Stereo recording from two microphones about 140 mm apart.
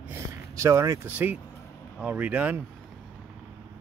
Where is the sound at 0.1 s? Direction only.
20° right (ahead or behind).